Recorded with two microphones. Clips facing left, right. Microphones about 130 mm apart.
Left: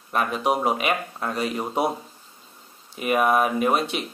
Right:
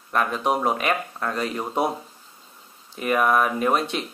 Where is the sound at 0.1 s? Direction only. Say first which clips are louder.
Even; 15° left (ahead or behind).